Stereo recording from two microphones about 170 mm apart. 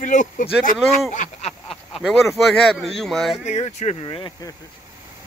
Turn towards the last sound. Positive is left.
turn(degrees=25)  # may be behind; listen again after turning